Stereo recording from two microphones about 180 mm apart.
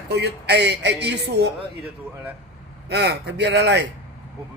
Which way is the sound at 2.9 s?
65° right (ahead or behind).